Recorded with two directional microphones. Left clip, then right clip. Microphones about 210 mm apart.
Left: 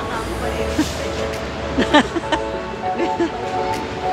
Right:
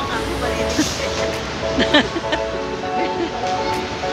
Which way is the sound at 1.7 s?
15° left (ahead or behind).